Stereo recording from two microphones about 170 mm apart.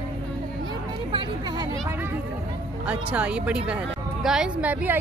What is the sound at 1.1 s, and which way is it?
Speech, 25° right (ahead or behind).